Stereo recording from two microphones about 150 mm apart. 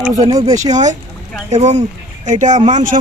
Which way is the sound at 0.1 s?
25° right (ahead or behind).